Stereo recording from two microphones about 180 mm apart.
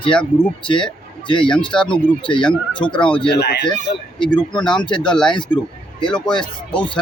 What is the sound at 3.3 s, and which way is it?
Speech, 65° left (ahead or behind).